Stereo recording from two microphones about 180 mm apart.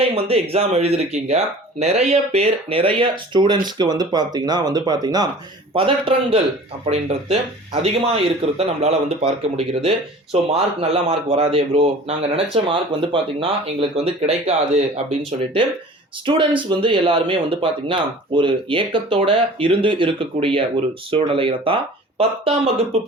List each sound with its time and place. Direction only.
0.1 s speech: 30° right (ahead or behind)
16.2 s speech: 30° right (ahead or behind)